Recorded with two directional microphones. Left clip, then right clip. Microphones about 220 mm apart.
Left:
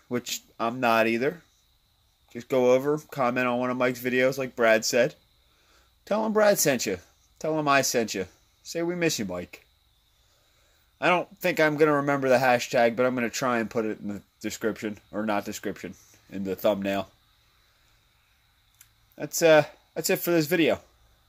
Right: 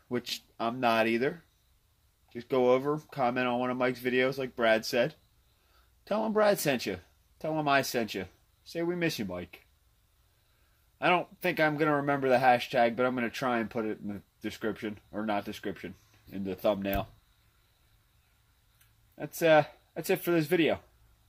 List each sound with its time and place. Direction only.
0.1 s speech: 15° left (ahead or behind)
11.0 s speech: 15° left (ahead or behind)
19.1 s speech: 15° left (ahead or behind)